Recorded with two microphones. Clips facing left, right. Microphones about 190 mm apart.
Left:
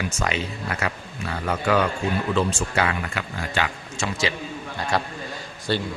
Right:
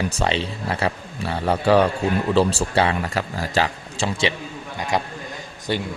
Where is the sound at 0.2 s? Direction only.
30° right (ahead or behind).